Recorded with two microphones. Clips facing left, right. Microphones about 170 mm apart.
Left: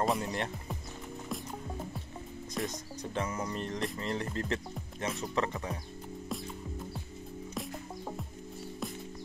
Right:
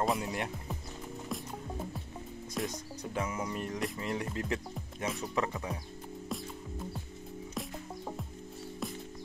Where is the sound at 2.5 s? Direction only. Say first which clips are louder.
Even; 5° right (ahead or behind).